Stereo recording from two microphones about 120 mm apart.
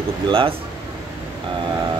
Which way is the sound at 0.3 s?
45° right (ahead or behind).